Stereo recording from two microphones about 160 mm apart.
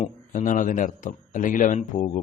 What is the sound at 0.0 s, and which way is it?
A man's voice, 55° left (ahead or behind).